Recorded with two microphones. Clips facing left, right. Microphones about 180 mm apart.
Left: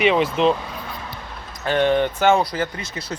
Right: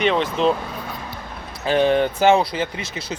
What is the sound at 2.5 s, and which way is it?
Speech, 25° right (ahead or behind).